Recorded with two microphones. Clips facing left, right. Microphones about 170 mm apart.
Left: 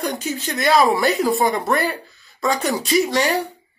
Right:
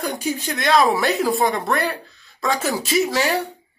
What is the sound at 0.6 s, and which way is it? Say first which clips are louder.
A man's voice: left 2 dB; 5° left (ahead or behind).